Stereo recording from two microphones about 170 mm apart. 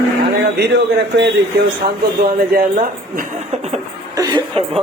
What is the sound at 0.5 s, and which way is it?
Speech, 85° right.